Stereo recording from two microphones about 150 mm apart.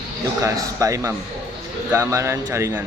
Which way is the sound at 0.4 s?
20° right (ahead or behind).